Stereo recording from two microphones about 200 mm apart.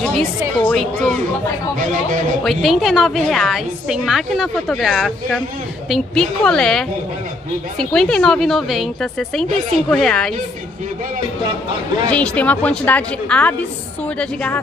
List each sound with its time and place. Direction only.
0.0 s music: 5° left (ahead or behind)
0.7 s a woman's voice: 5° left (ahead or behind)
1.8 s speech: 40° right (ahead or behind)
2.4 s a woman's voice: centre (ahead or behind)
12.1 s a woman's voice: 5° left (ahead or behind)